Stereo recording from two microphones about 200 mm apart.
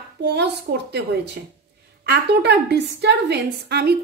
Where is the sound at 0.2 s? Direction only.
55° right (ahead or behind).